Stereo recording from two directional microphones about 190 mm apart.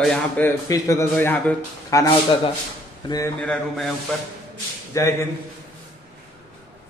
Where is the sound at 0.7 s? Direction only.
20° left (ahead or behind).